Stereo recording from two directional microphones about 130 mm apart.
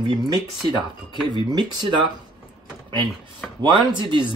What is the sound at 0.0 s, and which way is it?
Speech, 30° right (ahead or behind).